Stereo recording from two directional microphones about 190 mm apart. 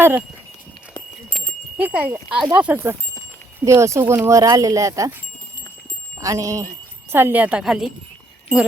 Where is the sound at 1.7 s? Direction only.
10° right (ahead or behind).